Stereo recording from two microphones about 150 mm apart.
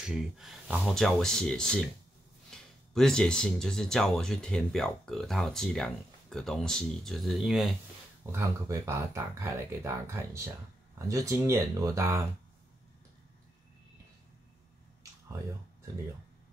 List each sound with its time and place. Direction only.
0.0 s speech: centre (ahead or behind)
8.3 s speech: 20° right (ahead or behind)